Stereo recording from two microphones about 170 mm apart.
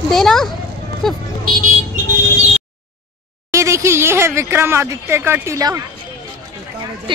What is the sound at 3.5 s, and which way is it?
Speech, 15° right (ahead or behind).